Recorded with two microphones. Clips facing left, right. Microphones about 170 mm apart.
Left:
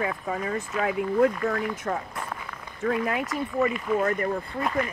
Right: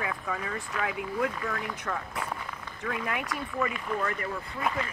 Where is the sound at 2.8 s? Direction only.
35° left (ahead or behind).